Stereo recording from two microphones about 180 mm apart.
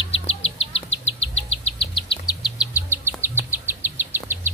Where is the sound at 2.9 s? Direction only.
15° right (ahead or behind).